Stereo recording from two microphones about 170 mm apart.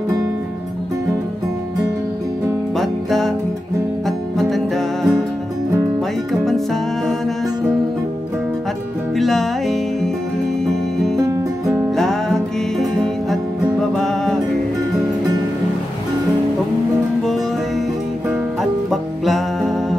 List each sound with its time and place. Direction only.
2.7 s music: centre (ahead or behind)
4.4 s music: centre (ahead or behind)
6.4 s music: centre (ahead or behind)
9.1 s music: centre (ahead or behind)
11.1 s music: 20° right (ahead or behind)
11.9 s music: centre (ahead or behind)
17.2 s music: centre (ahead or behind)